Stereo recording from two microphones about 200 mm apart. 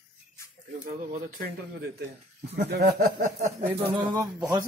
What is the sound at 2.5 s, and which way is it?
Speech, 50° right (ahead or behind).